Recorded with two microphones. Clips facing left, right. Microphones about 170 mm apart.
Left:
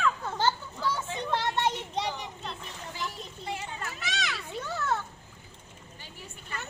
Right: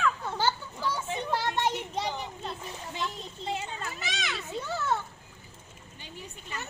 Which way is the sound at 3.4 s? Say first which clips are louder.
Right 2 dB; 25° right (ahead or behind).